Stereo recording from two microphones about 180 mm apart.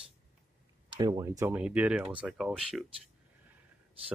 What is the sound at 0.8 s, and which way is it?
Speech, 20° right (ahead or behind).